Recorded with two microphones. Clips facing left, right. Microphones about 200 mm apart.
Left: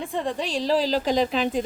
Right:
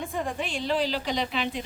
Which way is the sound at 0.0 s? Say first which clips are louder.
Left 3 dB; 30° left (ahead or behind).